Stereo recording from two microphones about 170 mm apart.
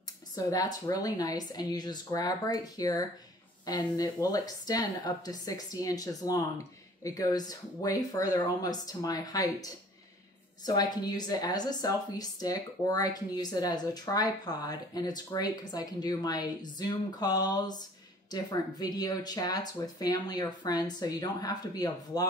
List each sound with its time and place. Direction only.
0.4 s speech: 20° left (ahead or behind)